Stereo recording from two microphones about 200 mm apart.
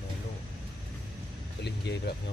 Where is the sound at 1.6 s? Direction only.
55° left (ahead or behind).